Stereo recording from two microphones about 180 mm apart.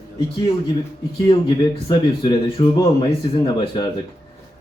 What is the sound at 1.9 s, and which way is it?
A man's voice, 20° left (ahead or behind).